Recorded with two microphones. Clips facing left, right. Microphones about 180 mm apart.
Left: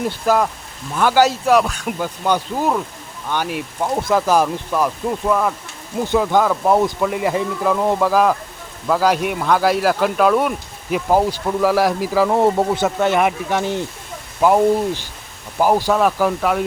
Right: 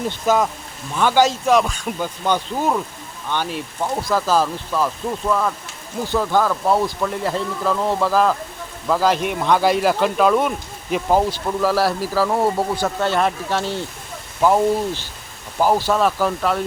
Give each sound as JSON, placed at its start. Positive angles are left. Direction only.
{"t": 0.0, "sound": "speech", "side_deg": 5}